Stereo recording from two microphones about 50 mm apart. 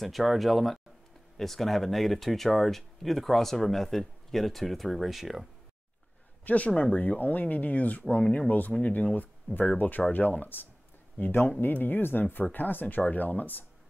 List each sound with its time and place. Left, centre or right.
0.0 s speech: centre
6.4 s speech: left
8.5 s speech: left